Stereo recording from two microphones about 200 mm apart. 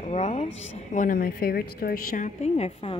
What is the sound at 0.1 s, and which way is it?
Speech, 35° left (ahead or behind).